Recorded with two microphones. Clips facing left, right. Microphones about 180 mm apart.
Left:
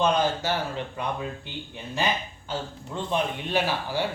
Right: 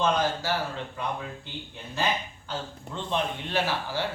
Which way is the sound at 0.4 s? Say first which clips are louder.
Left 1 dB; 20° left (ahead or behind).